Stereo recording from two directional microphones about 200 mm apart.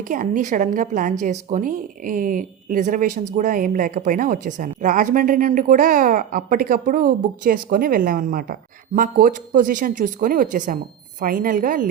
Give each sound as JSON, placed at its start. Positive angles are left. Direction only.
{"t": 0.0, "sound": "a woman's voice", "side_deg": -40}